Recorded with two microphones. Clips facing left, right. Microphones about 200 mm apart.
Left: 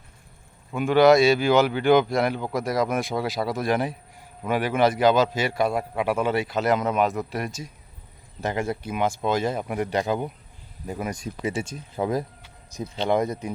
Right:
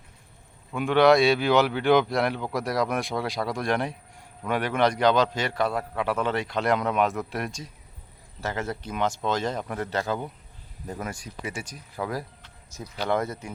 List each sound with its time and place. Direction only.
0.7 s speech: centre (ahead or behind)
8.4 s speech: 15° left (ahead or behind)
11.1 s speech: 25° left (ahead or behind)